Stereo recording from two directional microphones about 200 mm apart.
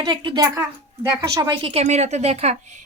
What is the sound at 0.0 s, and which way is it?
A woman's voice, 20° right (ahead or behind).